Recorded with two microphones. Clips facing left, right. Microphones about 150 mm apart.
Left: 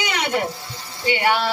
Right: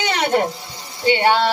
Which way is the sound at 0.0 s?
35° right (ahead or behind).